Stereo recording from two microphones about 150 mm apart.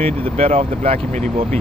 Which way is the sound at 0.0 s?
40° right (ahead or behind).